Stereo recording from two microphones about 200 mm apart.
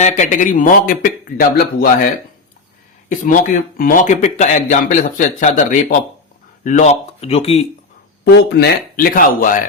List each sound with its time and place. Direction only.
0.0 s speech: 35° left (ahead or behind)
3.1 s speech: 40° left (ahead or behind)
8.2 s speech: 55° left (ahead or behind)